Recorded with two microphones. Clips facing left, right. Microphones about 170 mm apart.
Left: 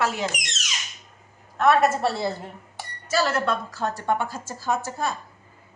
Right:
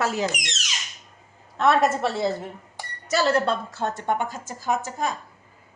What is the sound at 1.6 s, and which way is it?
A woman's voice, 20° right (ahead or behind).